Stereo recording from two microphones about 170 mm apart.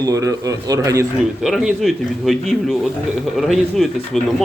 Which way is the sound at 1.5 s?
Centre (ahead or behind).